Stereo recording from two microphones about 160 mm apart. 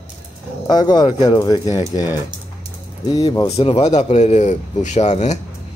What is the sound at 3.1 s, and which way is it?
Speech, 25° left (ahead or behind).